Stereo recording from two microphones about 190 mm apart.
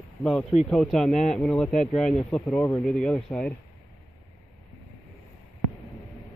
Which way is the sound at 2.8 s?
5° left (ahead or behind).